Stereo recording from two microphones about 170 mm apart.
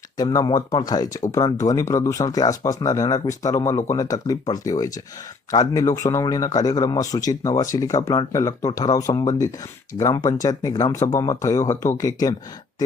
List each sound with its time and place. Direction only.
0.2 s a man's voice: 20° left (ahead or behind)